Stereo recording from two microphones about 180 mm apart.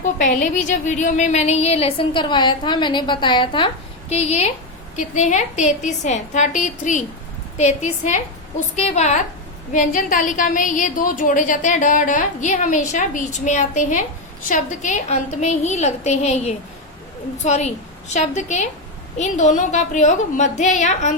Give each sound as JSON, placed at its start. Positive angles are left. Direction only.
{"t": 0.0, "sound": "a woman's voice", "side_deg": 45}